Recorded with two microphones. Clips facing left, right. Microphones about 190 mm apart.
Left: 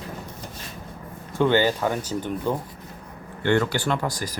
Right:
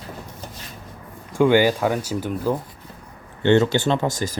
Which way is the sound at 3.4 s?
25° right (ahead or behind).